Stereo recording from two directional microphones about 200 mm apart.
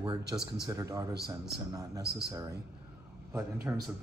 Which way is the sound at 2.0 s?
55° right (ahead or behind).